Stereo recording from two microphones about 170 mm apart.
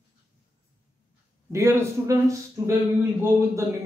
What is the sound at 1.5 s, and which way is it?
A man's voice, 15° right (ahead or behind).